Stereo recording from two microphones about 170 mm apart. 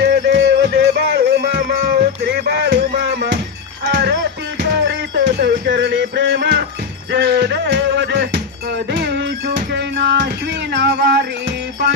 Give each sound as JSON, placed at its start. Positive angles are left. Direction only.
{"t": 0.0, "sound": "music", "side_deg": -85}
{"t": 7.1, "sound": "music", "side_deg": -75}